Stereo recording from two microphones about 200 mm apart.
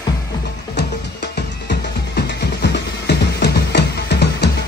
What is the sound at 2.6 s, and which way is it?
Music, 55° left (ahead or behind).